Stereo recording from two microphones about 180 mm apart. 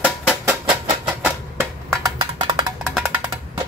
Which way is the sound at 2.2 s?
25° right (ahead or behind).